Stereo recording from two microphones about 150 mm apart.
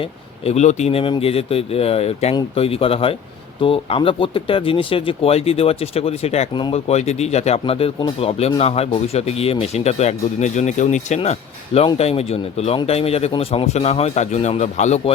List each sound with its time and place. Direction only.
0.0 s speech: 45° left (ahead or behind)
6.5 s speech: 30° left (ahead or behind)
6.7 s speech: 45° left (ahead or behind)